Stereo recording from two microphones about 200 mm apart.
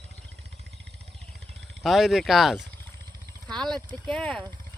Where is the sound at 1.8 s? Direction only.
Centre (ahead or behind).